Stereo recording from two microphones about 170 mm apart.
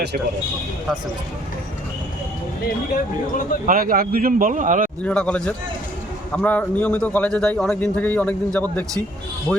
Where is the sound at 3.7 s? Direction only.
55° right (ahead or behind).